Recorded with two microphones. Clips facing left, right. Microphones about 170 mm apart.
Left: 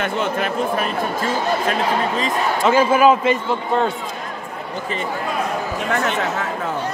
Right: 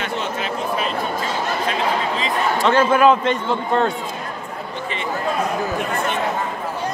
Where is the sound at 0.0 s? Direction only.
50° left (ahead or behind).